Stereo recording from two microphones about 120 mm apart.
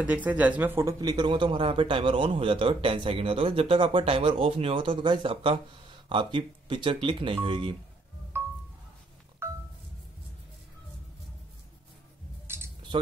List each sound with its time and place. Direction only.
0.0 s speech: 15° right (ahead or behind); by 7.7 s 45° right (ahead or behind)
8.3 s music: 20° right (ahead or behind)
12.5 s a sound: 20° right (ahead or behind)
12.9 s speech: 45° right (ahead or behind)